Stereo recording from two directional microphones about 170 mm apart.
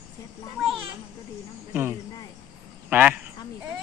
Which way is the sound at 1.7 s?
10° right (ahead or behind).